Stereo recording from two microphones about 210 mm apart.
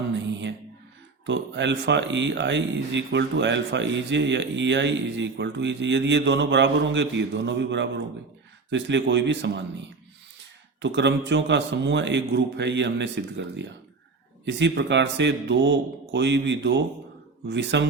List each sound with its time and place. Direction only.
0.1 s music: 60° right (ahead or behind)
1.3 s speech: 55° right (ahead or behind)
10.8 s speech: 55° right (ahead or behind)